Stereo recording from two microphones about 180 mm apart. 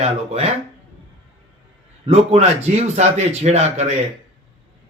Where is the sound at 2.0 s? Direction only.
35° right (ahead or behind).